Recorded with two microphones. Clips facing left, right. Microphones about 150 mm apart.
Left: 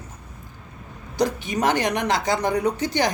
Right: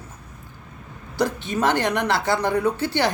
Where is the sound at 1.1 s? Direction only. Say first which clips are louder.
Even; 15° left (ahead or behind).